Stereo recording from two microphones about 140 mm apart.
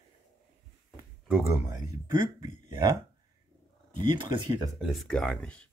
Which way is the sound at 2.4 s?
35° right (ahead or behind).